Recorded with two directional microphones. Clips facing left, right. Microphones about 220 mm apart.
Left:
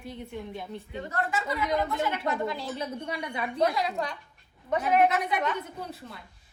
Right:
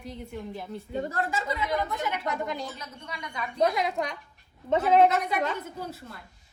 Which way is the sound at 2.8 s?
30° left (ahead or behind).